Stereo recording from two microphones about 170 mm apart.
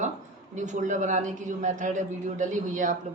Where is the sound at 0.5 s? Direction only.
45° right (ahead or behind).